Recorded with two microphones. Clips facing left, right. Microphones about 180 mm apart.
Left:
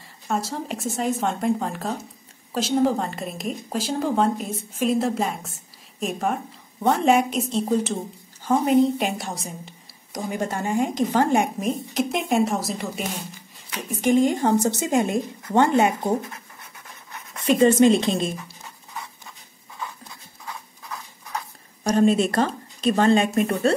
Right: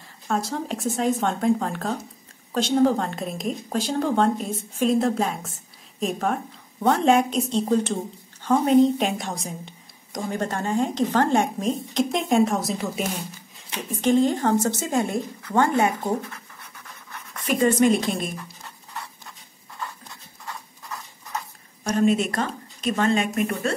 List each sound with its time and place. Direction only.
0.0 s a woman's voice: centre (ahead or behind)
13.7 s a woman's voice: 10° left (ahead or behind)
17.3 s a woman's voice: 25° left (ahead or behind)
18.4 s dog: 5° left (ahead or behind)
21.8 s speech: 30° left (ahead or behind)